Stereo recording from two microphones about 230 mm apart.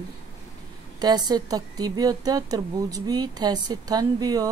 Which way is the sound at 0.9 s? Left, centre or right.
Centre.